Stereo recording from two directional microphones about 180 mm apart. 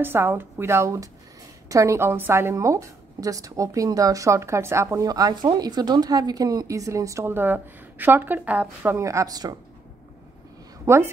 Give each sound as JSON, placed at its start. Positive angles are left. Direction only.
{"t": 0.0, "sound": "a woman's voice", "side_deg": -10}
{"t": 10.9, "sound": "a woman's voice", "side_deg": -15}